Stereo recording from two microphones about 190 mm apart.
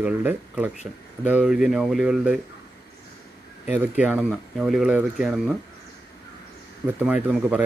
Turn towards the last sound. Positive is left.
turn(degrees=-10)  # may be behind; listen again after turning